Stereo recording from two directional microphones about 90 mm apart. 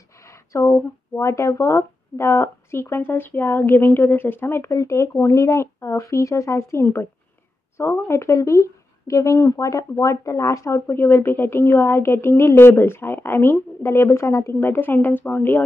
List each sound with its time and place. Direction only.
0.2 s speech: 35° left (ahead or behind)